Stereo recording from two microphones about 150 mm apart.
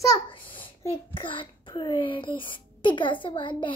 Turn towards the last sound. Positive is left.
turn(degrees=35)  # may be behind; listen again after turning